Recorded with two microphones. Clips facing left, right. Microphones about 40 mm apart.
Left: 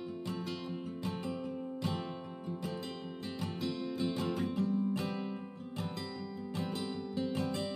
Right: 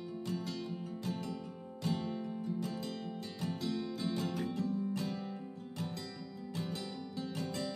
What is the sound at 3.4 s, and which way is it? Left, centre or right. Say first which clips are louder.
Music: right 1 dB; left.